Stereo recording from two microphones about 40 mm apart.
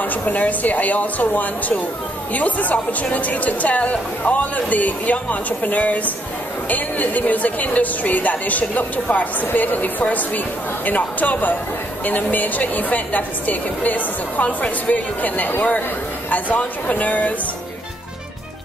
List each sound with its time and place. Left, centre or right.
0.0 s speech: left